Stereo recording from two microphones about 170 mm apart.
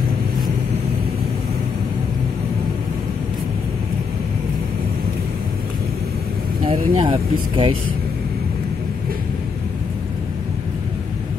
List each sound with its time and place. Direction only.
6.6 s speech: 30° right (ahead or behind)